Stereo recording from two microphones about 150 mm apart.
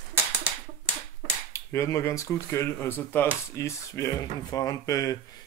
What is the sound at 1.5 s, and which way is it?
Speech, 20° left (ahead or behind).